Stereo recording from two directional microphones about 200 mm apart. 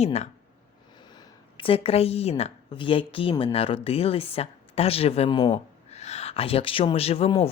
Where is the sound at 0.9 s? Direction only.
20° left (ahead or behind).